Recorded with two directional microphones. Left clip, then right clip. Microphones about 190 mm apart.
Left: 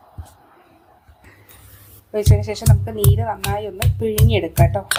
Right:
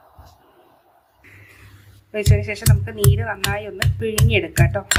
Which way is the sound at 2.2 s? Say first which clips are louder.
Left 1 dB; 10° left (ahead or behind).